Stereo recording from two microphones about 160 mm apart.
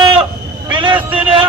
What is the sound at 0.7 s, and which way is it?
Vehicle, 30° right (ahead or behind).